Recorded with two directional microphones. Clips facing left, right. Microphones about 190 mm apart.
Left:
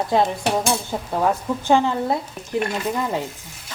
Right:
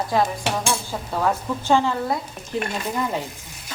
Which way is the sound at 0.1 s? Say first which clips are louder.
Left 3 dB; 25° left (ahead or behind).